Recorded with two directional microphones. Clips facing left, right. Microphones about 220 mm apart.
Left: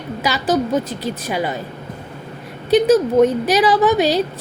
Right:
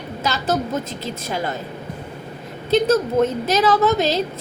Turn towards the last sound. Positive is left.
turn(degrees=15)  # may be behind; listen again after turning